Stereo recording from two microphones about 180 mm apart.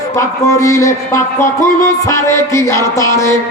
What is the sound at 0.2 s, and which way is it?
A man's voice, 15° left (ahead or behind).